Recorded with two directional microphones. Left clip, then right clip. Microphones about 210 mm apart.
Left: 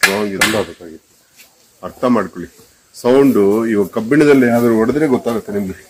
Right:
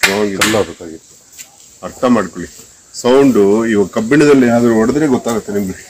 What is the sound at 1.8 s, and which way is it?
Speech, 5° right (ahead or behind).